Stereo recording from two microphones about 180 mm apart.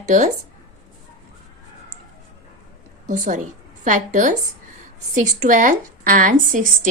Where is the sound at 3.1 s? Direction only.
45° right (ahead or behind).